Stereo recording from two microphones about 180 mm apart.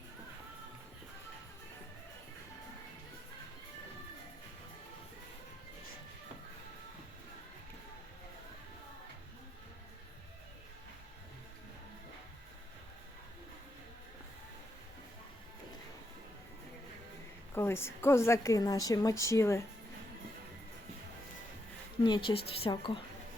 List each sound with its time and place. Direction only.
17.5 s a woman's voice: 15° left (ahead or behind)
22.0 s a woman's voice: 25° left (ahead or behind)